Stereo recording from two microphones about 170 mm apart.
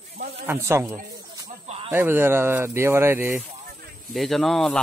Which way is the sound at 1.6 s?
35° right (ahead or behind).